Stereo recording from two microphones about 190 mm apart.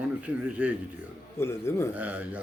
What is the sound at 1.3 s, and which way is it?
Speech, 15° left (ahead or behind).